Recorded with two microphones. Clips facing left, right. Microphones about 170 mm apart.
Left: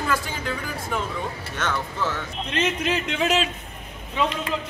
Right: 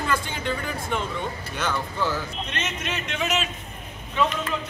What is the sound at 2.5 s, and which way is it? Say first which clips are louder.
A man's voice: left 10 dB; 30° left (ahead or behind).